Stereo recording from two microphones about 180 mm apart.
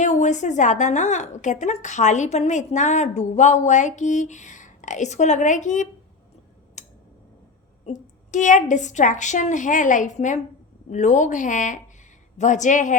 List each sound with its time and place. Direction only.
0.0 s a woman's voice: 40° left (ahead or behind)
6.8 s tick-tock: 40° left (ahead or behind)
7.9 s a woman's voice: 40° left (ahead or behind)